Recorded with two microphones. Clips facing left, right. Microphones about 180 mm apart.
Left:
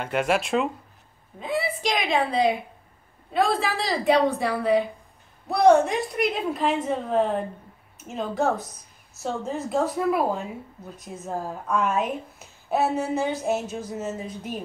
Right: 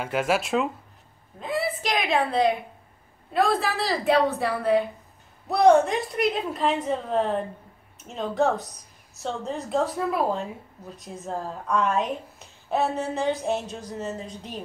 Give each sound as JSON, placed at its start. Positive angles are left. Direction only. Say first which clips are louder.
{"t": 0.0, "sound": "a woman's voice", "louder": "left 1 dB", "side_deg": -5}